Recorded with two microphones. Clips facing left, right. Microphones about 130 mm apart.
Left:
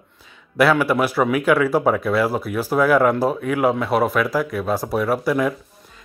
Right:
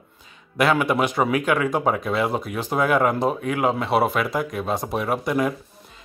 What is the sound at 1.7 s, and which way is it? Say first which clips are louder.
Speech: left 4 dB; 5° left (ahead or behind).